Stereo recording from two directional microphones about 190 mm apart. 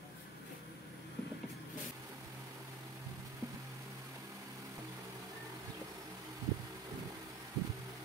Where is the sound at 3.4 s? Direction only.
15° right (ahead or behind).